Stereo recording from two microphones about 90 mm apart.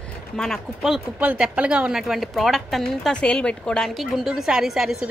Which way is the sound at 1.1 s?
15° right (ahead or behind).